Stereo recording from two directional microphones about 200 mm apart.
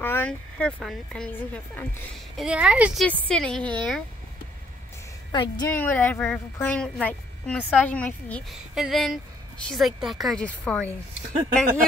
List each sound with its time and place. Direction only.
0.0 s a woman's voice: 10° left (ahead or behind)
2.3 s a woman's voice: 5° right (ahead or behind)
5.3 s a woman's voice: 25° left (ahead or behind)
5.7 s a woman's voice: 10° left (ahead or behind)